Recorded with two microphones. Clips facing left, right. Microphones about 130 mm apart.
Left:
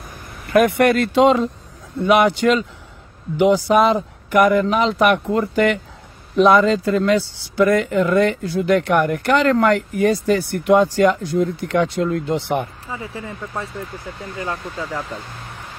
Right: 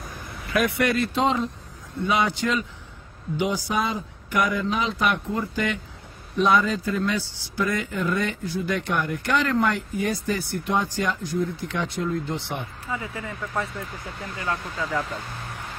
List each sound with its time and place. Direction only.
0.5 s a man's voice: 55° left (ahead or behind); by 1.5 s 90° left
2.0 s a man's voice: 70° left (ahead or behind)
12.9 s speech: 30° left (ahead or behind)